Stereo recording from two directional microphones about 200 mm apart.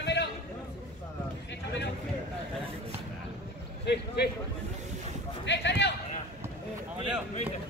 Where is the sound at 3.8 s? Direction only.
55° left (ahead or behind).